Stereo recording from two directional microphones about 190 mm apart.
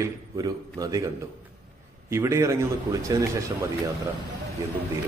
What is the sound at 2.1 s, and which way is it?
A man's voice, 15° right (ahead or behind).